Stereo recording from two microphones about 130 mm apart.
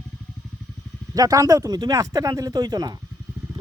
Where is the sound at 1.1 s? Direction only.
25° right (ahead or behind).